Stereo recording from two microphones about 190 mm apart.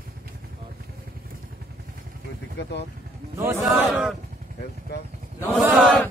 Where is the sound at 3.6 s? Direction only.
5° right (ahead or behind).